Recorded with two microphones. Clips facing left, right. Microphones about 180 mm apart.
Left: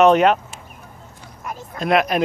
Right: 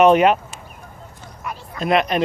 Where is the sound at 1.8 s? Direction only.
Centre (ahead or behind).